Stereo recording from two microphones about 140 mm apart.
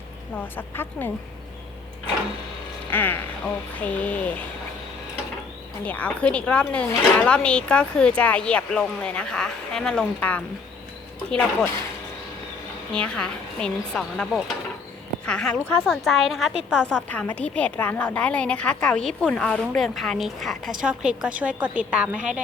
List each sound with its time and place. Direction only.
0.5 s speech: 15° left (ahead or behind)
2.9 s speech: 15° left (ahead or behind)
5.8 s speech: 10° left (ahead or behind)
12.9 s a woman's voice: 5° left (ahead or behind)
15.3 s a woman's voice: 5° left (ahead or behind)
16.8 s a woman's voice: 10° left (ahead or behind); by 22.4 s 10° right (ahead or behind)